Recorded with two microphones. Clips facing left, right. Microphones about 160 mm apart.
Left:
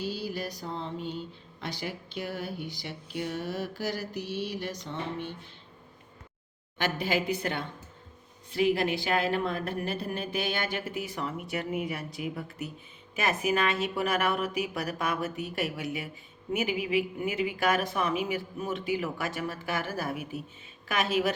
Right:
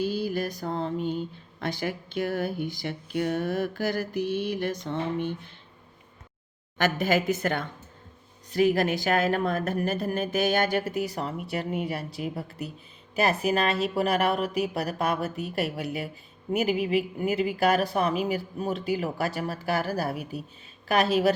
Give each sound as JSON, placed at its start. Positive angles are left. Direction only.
{"t": 0.0, "sound": "speech", "side_deg": -50}
{"t": 6.7, "sound": "speech", "side_deg": -45}